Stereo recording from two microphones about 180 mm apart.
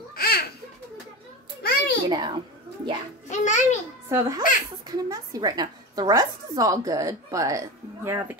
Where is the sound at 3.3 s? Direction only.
40° left (ahead or behind).